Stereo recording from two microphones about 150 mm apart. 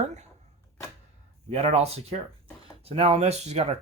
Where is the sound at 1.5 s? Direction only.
45° right (ahead or behind).